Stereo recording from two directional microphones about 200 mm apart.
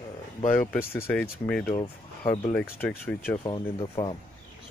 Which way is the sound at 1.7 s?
25° left (ahead or behind).